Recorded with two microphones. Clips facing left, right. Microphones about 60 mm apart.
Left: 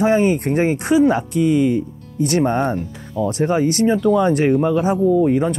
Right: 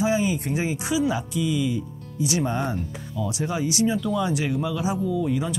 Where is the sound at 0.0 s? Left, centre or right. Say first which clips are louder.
Left 7 dB; left.